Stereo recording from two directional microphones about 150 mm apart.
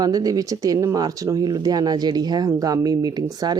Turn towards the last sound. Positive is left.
turn(degrees=-25)  # may be behind; listen again after turning